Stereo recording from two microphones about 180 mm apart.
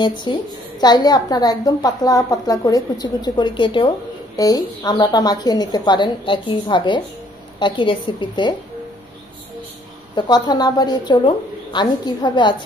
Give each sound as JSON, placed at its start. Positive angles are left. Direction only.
{"t": 0.0, "sound": "a woman's voice", "side_deg": 25}
{"t": 10.1, "sound": "a woman's voice", "side_deg": 25}